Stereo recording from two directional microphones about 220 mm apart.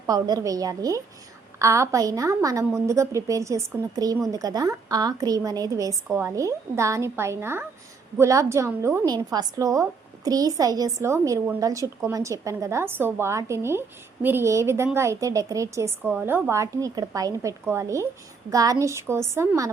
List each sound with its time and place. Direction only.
0.0 s a woman's voice: 15° right (ahead or behind)